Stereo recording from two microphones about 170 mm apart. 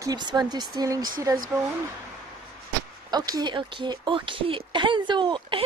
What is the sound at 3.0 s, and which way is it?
Speech, 25° right (ahead or behind).